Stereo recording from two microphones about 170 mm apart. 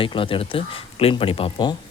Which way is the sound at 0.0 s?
30° left (ahead or behind).